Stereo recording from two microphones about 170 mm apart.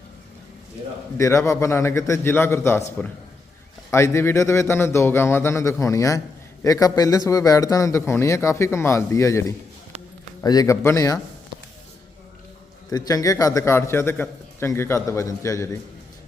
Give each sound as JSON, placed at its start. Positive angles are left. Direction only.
{"t": 1.1, "sound": "a man's voice", "side_deg": 15}
{"t": 12.9, "sound": "a man's voice", "side_deg": 20}